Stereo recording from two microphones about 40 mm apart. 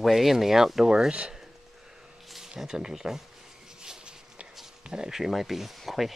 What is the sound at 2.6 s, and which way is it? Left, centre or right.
Speech, centre.